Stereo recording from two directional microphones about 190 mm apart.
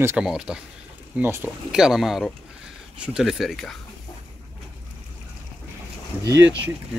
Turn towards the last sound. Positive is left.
turn(degrees=-20)  # may be behind; listen again after turning